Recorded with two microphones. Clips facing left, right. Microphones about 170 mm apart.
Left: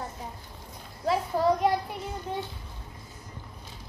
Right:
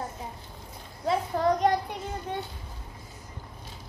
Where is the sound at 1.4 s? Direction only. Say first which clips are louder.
Left 1 dB; 5° left (ahead or behind).